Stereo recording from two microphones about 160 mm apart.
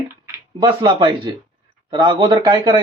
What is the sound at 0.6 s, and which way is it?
A man's voice, 30° right (ahead or behind).